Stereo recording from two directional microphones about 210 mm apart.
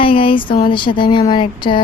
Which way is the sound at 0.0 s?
25° left (ahead or behind).